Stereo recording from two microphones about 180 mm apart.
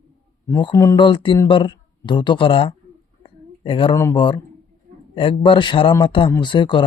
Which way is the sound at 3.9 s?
20° left (ahead or behind).